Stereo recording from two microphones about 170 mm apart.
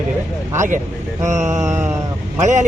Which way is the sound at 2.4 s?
45° right (ahead or behind).